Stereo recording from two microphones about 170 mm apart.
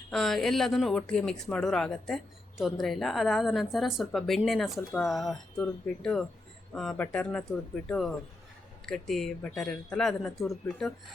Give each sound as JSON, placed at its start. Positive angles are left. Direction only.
{"t": 0.1, "sound": "speech", "side_deg": 0}